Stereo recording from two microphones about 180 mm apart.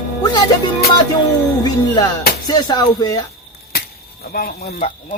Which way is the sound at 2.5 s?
20° left (ahead or behind).